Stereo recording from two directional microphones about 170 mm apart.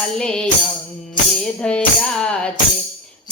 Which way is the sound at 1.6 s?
5° left (ahead or behind).